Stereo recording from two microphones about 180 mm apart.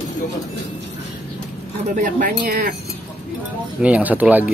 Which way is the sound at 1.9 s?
45° right (ahead or behind).